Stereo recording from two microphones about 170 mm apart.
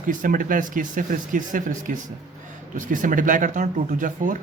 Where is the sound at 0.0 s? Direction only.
50° right (ahead or behind).